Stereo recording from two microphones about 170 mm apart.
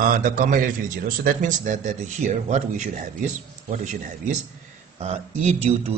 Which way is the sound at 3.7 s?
45° right (ahead or behind).